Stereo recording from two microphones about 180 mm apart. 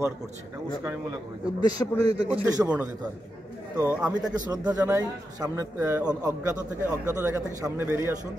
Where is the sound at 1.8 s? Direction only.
15° left (ahead or behind).